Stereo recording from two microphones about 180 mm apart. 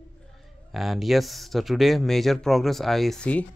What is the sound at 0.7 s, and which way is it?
Speech, centre (ahead or behind).